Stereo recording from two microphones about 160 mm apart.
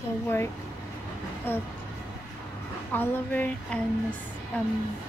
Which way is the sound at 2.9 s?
15° left (ahead or behind).